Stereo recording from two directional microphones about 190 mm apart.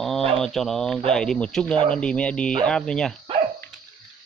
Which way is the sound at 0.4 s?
Centre (ahead or behind).